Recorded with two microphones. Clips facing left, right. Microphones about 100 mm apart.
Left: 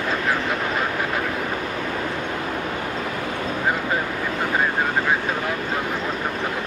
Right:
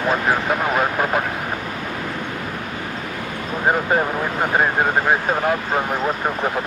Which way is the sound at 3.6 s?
45° right (ahead or behind).